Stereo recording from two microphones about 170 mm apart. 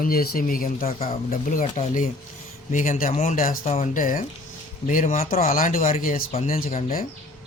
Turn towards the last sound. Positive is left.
turn(degrees=40)  # may be behind; listen again after turning